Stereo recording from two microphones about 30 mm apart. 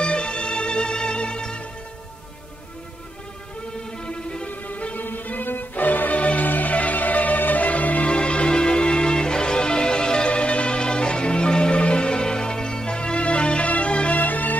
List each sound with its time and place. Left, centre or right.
0.0 s music: left
4.0 s music: left
4.5 s music: left
4.9 s music: left
6.1 s music: left
6.4 s music: left
6.7 s music: left
8.1 s music: left
10.3 s music: left
14.1 s music: left